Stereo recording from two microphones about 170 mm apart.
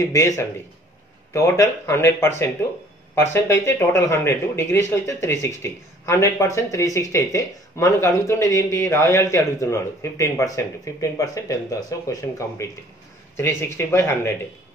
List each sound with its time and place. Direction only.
0.0 s speech: 20° left (ahead or behind)